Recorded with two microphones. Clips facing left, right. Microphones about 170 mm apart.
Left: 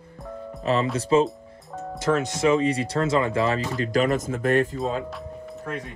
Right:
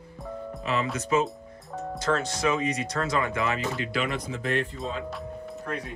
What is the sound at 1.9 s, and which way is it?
Speech, 20° left (ahead or behind).